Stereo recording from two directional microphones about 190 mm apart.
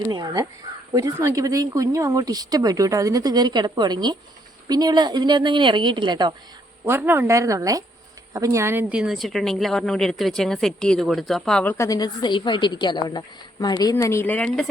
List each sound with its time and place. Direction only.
0.1 s speech: 20° right (ahead or behind)
6.8 s a woman's voice: 10° right (ahead or behind)